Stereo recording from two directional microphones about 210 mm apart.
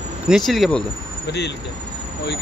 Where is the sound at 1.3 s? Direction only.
55° left (ahead or behind).